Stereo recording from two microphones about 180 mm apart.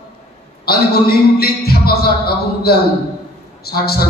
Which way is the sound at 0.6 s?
60° left (ahead or behind).